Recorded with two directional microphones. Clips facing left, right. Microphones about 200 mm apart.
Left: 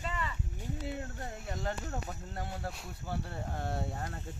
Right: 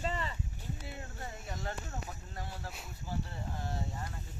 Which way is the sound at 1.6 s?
55° left (ahead or behind).